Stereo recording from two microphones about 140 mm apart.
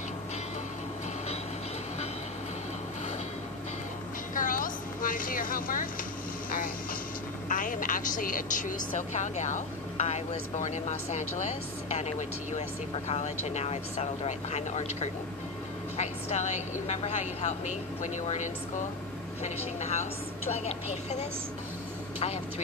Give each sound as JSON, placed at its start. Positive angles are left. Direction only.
{"t": 4.4, "sound": "vehicle", "side_deg": 75}
{"t": 7.4, "sound": "a woman's voice", "side_deg": 70}